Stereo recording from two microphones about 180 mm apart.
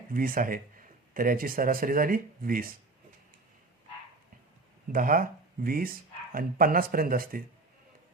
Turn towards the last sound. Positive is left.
turn(degrees=-55)  # may be behind; listen again after turning